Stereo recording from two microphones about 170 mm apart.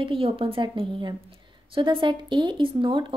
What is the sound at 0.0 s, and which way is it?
A woman's voice, 30° right (ahead or behind).